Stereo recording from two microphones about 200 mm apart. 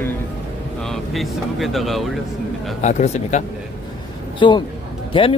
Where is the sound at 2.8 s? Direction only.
35° left (ahead or behind).